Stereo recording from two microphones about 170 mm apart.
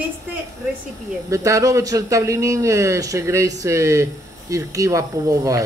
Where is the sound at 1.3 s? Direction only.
20° right (ahead or behind).